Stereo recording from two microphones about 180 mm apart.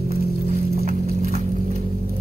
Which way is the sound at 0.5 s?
40° right (ahead or behind).